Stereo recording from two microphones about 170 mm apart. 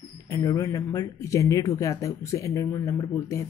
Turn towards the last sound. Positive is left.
turn(degrees=15)  # may be behind; listen again after turning